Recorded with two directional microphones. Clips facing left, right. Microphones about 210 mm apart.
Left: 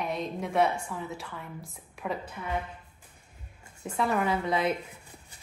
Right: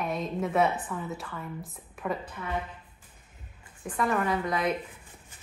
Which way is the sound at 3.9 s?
5° left (ahead or behind).